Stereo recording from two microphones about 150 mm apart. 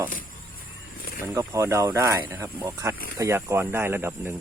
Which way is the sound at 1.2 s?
20° right (ahead or behind).